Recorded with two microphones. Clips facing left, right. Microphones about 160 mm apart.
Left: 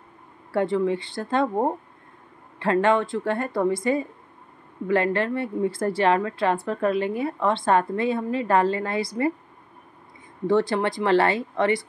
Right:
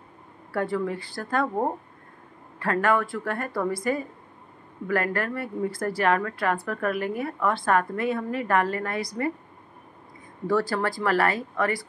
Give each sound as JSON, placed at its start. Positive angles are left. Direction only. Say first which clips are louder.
{"t": 0.5, "sound": "a woman's voice", "louder": "left 5 dB", "side_deg": 25}
{"t": 10.4, "sound": "a woman's voice", "louder": "left 3 dB", "side_deg": 20}